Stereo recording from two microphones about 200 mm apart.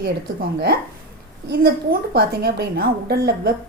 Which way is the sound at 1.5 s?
50° right (ahead or behind).